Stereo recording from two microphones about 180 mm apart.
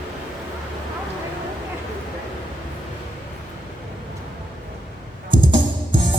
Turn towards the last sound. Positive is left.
turn(degrees=-25)  # may be behind; listen again after turning